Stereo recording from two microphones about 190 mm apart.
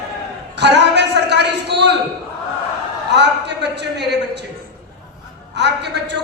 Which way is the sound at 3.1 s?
65° right (ahead or behind).